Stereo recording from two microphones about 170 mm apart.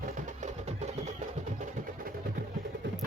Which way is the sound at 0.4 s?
45° right (ahead or behind).